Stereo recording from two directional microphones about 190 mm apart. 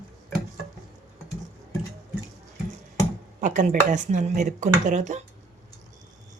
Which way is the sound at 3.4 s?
40° right (ahead or behind).